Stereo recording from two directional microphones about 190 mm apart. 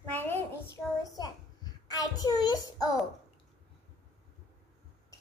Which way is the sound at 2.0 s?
20° left (ahead or behind).